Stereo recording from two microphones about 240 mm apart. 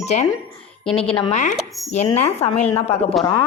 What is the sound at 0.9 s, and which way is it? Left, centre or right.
A woman's voice, left.